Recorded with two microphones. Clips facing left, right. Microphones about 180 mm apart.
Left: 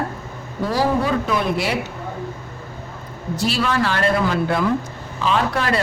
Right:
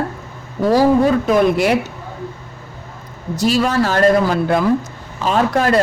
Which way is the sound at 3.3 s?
40° right (ahead or behind).